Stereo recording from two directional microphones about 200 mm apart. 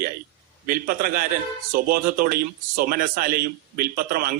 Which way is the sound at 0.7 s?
45° right (ahead or behind).